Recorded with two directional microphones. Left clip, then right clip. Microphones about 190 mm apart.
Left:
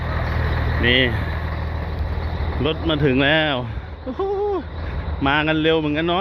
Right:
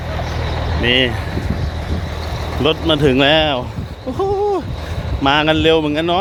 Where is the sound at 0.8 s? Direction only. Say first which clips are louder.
Right 3 dB; 20° right (ahead or behind).